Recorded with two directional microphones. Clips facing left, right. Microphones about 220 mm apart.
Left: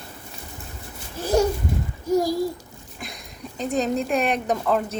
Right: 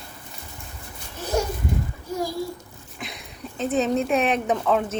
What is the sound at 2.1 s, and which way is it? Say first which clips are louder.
Speech: left 7 dB; 40° left (ahead or behind).